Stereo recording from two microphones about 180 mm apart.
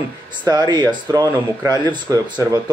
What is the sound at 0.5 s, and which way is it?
Speech, 25° right (ahead or behind).